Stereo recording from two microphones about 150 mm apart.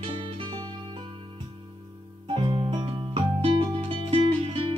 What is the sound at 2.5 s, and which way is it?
Music, 30° right (ahead or behind).